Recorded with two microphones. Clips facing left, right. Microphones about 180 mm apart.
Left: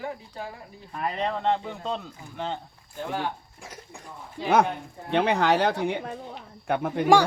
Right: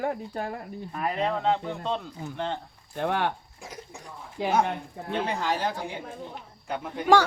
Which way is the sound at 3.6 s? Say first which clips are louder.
Right 3 dB; centre (ahead or behind).